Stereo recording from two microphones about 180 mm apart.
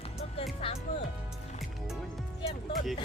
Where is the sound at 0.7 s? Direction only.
30° left (ahead or behind).